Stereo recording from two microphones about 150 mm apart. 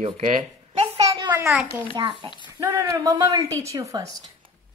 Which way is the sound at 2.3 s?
30° left (ahead or behind).